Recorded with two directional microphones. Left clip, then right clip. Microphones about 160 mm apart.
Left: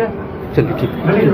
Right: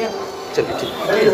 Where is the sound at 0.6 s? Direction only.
Centre (ahead or behind).